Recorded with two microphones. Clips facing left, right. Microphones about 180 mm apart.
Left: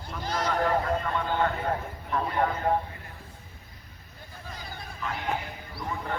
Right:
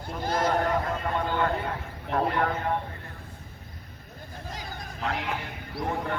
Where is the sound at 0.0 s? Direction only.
55° right (ahead or behind).